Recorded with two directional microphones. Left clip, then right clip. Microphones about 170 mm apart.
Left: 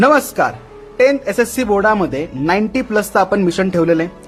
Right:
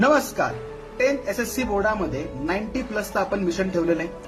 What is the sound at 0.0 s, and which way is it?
Speech, 50° left (ahead or behind).